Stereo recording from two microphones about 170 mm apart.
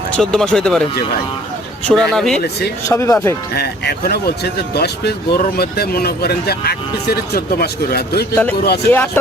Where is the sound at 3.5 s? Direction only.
70° left (ahead or behind).